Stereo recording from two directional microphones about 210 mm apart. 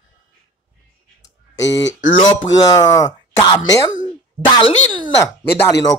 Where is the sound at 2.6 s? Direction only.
15° left (ahead or behind).